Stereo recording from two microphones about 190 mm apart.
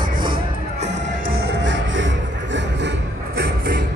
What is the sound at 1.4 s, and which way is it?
Music, 75° right (ahead or behind).